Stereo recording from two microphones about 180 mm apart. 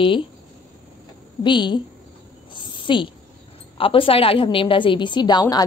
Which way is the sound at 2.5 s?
25° left (ahead or behind).